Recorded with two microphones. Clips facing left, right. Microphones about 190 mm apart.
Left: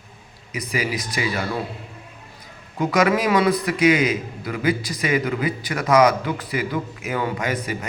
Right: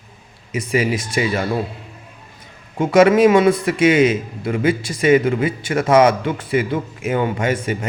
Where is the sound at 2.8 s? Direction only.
25° right (ahead or behind).